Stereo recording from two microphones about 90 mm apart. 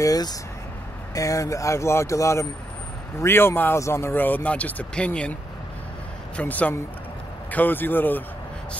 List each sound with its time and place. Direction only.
0.0 s speech: 45° left (ahead or behind); by 5.3 s 15° left (ahead or behind)
6.3 s speech: 15° left (ahead or behind)